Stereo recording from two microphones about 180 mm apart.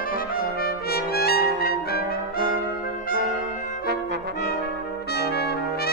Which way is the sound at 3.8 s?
65° right (ahead or behind).